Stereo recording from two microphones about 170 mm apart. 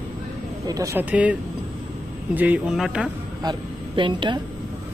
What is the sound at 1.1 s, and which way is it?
Speech, 10° right (ahead or behind).